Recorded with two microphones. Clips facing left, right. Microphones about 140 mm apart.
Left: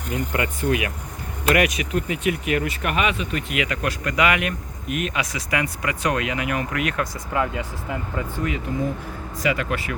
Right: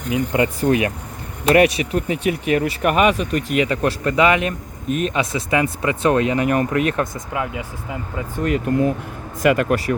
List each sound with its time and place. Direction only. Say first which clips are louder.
0.3 s speech: right 6 dB; 35° right (ahead or behind)
8.4 s speech: right 10 dB; 60° right (ahead or behind)